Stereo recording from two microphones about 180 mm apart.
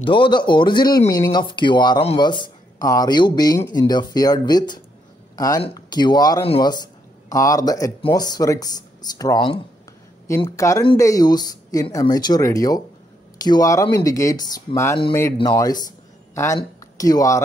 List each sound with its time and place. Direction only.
0.0 s speech: 25° left (ahead or behind)